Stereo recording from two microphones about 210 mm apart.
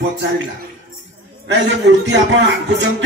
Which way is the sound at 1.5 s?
60° right (ahead or behind).